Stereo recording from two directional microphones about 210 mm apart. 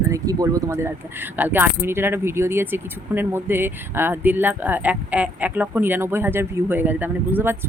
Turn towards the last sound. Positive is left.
turn(degrees=-10)  # may be behind; listen again after turning